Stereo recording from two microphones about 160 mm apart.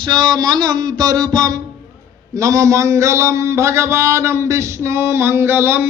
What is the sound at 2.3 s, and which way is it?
A man's voice, 20° right (ahead or behind).